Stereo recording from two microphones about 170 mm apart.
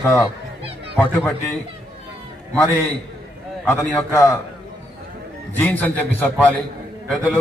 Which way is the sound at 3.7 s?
15° left (ahead or behind).